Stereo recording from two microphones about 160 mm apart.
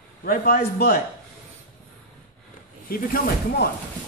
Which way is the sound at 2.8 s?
65° left (ahead or behind).